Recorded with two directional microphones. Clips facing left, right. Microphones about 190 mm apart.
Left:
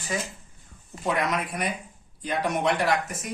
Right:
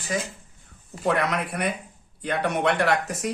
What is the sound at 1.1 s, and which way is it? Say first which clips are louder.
Speech: right 1 dB; 65° right (ahead or behind).